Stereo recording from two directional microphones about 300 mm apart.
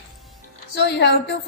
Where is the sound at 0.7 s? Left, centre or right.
Left.